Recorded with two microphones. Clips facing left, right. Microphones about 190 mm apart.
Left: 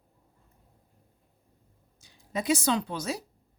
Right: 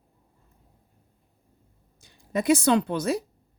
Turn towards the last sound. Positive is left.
turn(degrees=-55)  # may be behind; listen again after turning